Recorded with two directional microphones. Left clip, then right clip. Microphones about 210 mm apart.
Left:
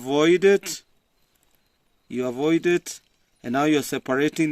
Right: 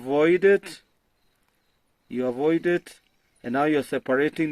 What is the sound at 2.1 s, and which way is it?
Speech, 55° left (ahead or behind).